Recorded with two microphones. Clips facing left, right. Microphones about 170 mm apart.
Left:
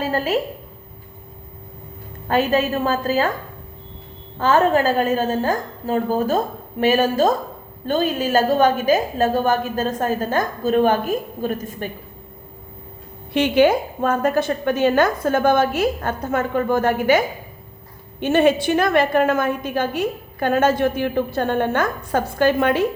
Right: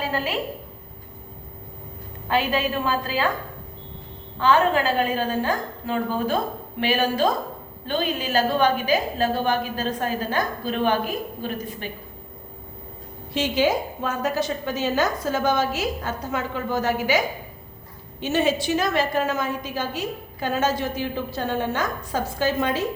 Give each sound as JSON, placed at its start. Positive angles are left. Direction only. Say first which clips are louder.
{"t": 0.0, "sound": "a sound", "louder": "left 5 dB", "side_deg": 45}
{"t": 2.2, "sound": "a woman's voice", "louder": "left 4 dB", "side_deg": 45}
{"t": 4.4, "sound": "a woman's voice", "louder": "left 3 dB", "side_deg": 45}
{"t": 13.3, "sound": "a woman's voice", "louder": "left 6 dB", "side_deg": 60}